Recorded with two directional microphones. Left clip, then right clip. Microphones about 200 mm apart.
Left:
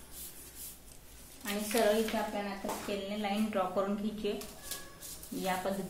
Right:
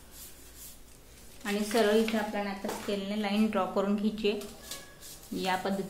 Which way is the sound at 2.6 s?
30° right (ahead or behind).